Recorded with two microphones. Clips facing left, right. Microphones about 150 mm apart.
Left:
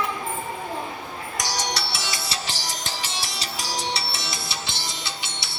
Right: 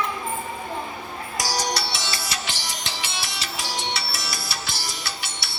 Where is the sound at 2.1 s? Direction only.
30° left (ahead or behind).